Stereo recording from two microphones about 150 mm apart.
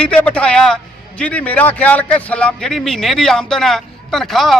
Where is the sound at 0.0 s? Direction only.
10° left (ahead or behind).